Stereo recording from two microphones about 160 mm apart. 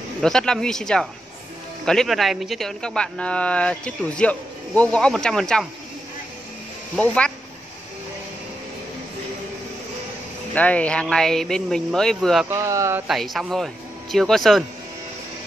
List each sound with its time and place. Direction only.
0.2 s speech: 5° left (ahead or behind)
7.0 s speech: 5° left (ahead or behind)
10.5 s speech: 10° left (ahead or behind)
12.4 s speech: 20° right (ahead or behind)
13.0 s speech: centre (ahead or behind)